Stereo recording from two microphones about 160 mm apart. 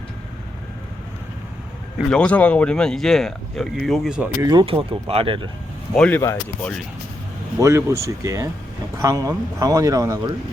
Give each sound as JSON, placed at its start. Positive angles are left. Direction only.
{"t": 2.0, "sound": "speech", "side_deg": 5}
{"t": 4.4, "sound": "speech", "side_deg": -25}
{"t": 5.9, "sound": "speech", "side_deg": 10}
{"t": 7.6, "sound": "speech", "side_deg": -15}